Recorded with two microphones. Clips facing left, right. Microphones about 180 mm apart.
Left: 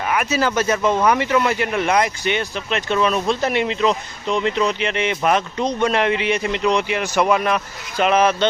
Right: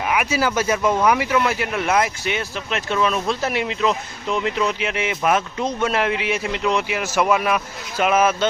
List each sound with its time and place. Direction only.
0.1 s speech: 10° right (ahead or behind)